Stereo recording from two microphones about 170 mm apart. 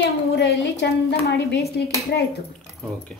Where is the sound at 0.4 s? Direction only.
80° left.